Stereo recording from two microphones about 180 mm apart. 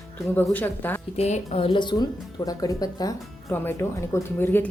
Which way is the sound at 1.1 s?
35° left (ahead or behind).